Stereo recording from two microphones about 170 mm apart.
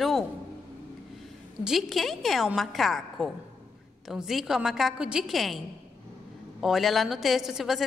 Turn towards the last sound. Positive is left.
turn(degrees=0)  # may be behind; listen again after turning